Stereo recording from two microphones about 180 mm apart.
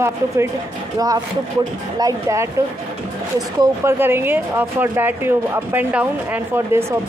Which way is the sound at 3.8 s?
10° right (ahead or behind).